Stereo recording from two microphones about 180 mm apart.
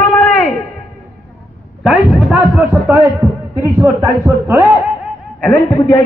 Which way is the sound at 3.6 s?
15° right (ahead or behind).